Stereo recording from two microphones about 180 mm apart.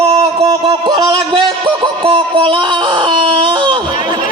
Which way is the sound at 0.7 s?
30° right (ahead or behind).